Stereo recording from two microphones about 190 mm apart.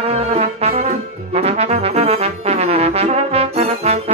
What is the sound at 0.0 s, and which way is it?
Brass instrument, 35° right (ahead or behind).